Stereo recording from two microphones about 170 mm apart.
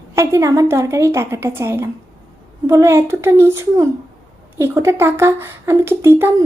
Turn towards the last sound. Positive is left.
turn(degrees=-15)  # may be behind; listen again after turning